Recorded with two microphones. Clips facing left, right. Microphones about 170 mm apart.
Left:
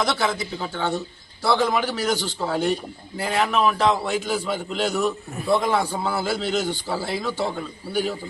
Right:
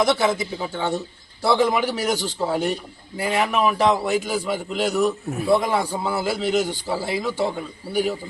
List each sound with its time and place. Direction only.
0.0 s a man's voice: 20° right (ahead or behind)